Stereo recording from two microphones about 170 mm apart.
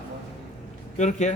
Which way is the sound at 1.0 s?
40° left (ahead or behind).